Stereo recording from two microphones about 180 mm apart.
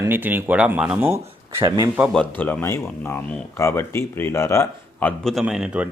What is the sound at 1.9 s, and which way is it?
Speech, centre (ahead or behind).